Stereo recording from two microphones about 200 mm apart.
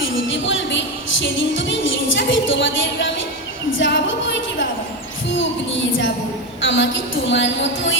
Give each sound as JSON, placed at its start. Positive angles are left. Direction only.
{"t": 0.0, "sound": "music", "side_deg": 70}
{"t": 3.7, "sound": "a sound", "side_deg": 65}
{"t": 6.6, "sound": "a woman's voice", "side_deg": 65}